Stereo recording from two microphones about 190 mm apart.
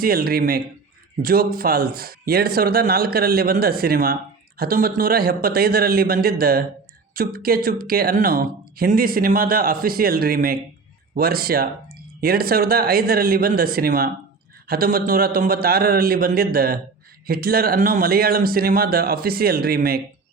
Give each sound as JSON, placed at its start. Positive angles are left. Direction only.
{"t": 0.0, "sound": "speech", "side_deg": -50}